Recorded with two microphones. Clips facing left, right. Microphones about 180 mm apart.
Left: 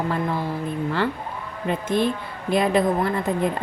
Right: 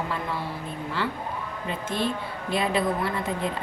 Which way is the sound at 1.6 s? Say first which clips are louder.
Left 7 dB; 50° left (ahead or behind).